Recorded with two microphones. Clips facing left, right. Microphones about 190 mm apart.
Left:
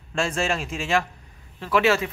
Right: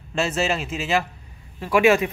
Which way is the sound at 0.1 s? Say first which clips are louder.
Right 2 dB; 5° right (ahead or behind).